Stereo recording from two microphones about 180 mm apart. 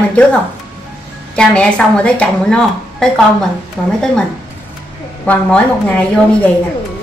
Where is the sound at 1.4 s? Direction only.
5° left (ahead or behind).